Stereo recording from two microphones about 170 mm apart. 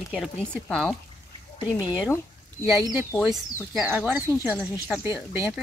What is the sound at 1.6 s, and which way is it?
Speech, 25° left (ahead or behind).